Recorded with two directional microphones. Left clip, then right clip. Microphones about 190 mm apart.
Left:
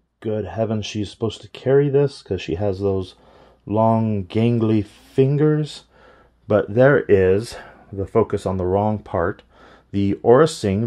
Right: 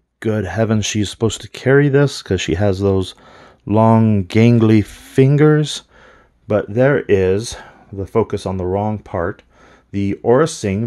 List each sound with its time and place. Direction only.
0.2 s speech: 35° right (ahead or behind)
6.4 s speech: 5° right (ahead or behind)